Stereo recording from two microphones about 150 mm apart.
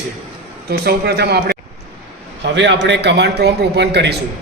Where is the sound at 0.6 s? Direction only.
90° right.